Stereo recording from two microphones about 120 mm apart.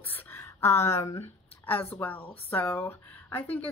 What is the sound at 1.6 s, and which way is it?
A woman's voice, 15° left (ahead or behind).